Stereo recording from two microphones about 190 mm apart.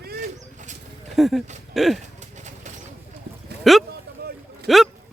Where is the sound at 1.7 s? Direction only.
Centre (ahead or behind).